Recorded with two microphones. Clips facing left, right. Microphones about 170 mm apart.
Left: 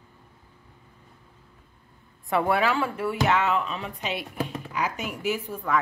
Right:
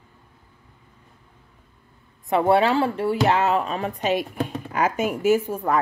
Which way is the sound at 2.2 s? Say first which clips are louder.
Right 5 dB; 25° right (ahead or behind).